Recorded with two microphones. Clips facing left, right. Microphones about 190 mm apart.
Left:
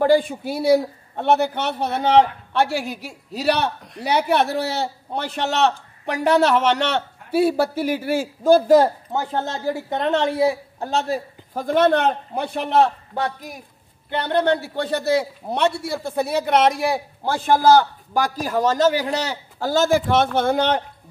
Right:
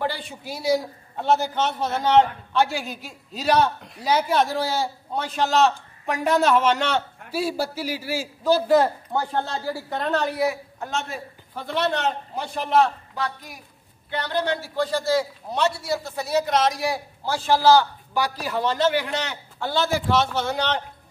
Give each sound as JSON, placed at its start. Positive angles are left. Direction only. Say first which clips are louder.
{"t": 0.0, "sound": "a man's voice", "louder": "left 12 dB", "side_deg": 50}
{"t": 9.1, "sound": "a woman's voice", "louder": "left 1 dB", "side_deg": 20}
{"t": 14.2, "sound": "a man's voice", "louder": "left 6 dB", "side_deg": 60}